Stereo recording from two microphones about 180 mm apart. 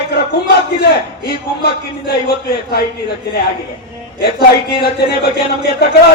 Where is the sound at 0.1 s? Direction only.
60° left (ahead or behind).